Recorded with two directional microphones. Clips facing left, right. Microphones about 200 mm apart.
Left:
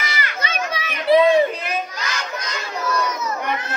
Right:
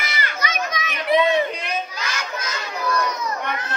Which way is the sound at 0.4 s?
30° left (ahead or behind).